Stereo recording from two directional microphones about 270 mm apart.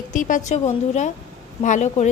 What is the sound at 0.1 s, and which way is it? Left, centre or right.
A woman's voice, left.